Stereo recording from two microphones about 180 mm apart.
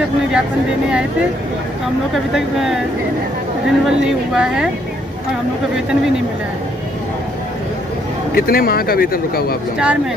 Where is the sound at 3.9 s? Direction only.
5° right (ahead or behind).